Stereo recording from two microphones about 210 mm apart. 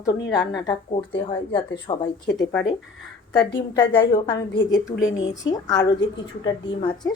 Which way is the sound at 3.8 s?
20° left (ahead or behind).